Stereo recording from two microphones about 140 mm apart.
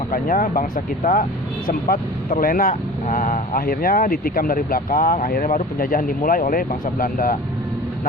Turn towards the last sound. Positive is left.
turn(degrees=85)